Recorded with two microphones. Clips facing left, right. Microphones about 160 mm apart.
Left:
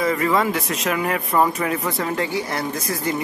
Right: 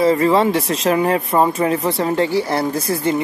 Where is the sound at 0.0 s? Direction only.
30° right (ahead or behind).